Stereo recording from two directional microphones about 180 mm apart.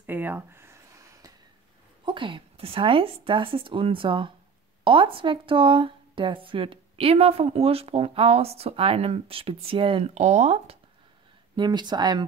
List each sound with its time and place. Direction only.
0.0 s a sound: 10° right (ahead or behind)
2.0 s speech: 25° right (ahead or behind)
11.5 s speech: 25° right (ahead or behind)